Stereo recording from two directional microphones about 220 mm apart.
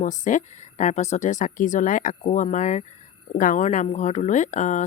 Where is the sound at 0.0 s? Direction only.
35° left (ahead or behind).